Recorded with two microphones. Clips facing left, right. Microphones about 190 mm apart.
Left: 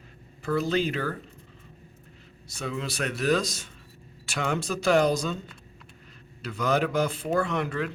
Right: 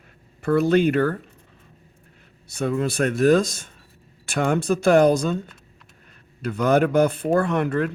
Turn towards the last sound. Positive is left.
turn(degrees=-50)  # may be behind; listen again after turning